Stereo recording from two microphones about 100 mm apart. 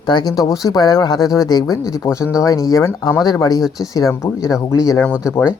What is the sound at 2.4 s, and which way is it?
Speech, 35° left (ahead or behind).